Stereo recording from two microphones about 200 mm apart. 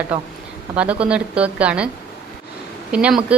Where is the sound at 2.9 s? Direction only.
5° right (ahead or behind).